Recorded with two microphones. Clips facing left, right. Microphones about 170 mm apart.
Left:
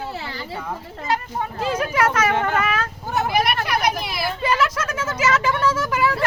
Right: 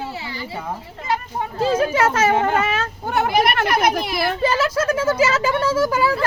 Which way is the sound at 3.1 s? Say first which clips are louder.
Right 3 dB; 65° right (ahead or behind).